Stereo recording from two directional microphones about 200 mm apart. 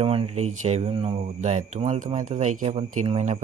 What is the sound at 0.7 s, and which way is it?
Speech, 30° right (ahead or behind).